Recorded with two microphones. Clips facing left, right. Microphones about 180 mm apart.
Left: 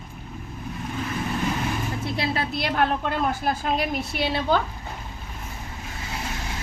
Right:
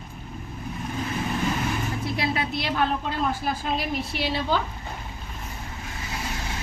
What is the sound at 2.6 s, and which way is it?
A woman's voice, 55° left (ahead or behind).